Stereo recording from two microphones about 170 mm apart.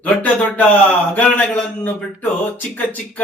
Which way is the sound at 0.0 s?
10° left (ahead or behind).